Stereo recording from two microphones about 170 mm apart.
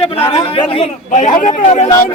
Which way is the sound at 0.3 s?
30° left (ahead or behind).